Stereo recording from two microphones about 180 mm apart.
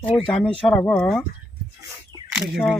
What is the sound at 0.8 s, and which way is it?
Speech, 5° left (ahead or behind).